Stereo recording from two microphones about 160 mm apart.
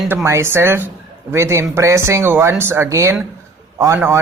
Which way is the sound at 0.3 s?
15° right (ahead or behind).